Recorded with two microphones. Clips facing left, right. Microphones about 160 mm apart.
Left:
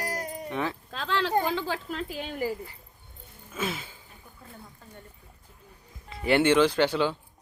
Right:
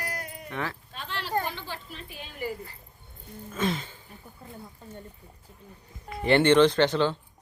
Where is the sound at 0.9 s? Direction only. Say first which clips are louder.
Left 5 dB; 90° left.